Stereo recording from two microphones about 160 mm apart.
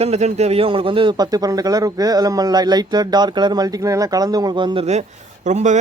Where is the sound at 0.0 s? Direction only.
45° right (ahead or behind).